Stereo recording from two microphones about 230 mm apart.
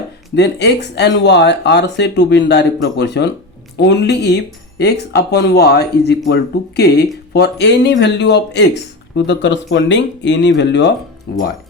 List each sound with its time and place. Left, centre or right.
0.3 s speech: left